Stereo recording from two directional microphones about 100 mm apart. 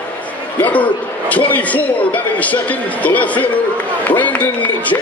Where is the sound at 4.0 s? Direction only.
15° left (ahead or behind).